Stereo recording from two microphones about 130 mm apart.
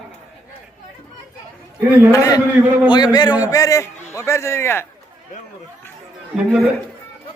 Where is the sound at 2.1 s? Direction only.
25° left (ahead or behind).